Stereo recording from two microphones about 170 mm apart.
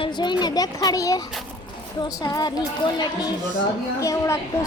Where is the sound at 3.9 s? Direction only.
20° left (ahead or behind).